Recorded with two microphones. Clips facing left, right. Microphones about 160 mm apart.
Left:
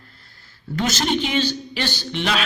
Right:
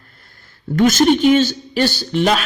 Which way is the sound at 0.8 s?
50° right (ahead or behind).